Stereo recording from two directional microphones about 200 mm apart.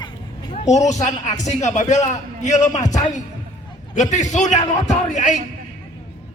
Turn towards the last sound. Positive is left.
turn(degrees=35)  # may be behind; listen again after turning